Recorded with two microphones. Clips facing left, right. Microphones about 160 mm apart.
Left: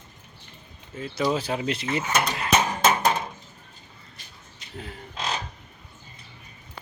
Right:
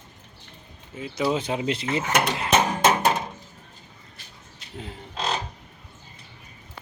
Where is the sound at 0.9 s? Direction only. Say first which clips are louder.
Even; 10° right (ahead or behind).